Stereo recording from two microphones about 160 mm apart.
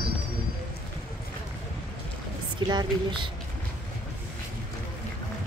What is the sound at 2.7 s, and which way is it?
Speech, 30° right (ahead or behind).